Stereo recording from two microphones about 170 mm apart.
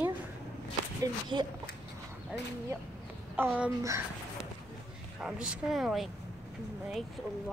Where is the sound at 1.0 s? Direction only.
25° right (ahead or behind).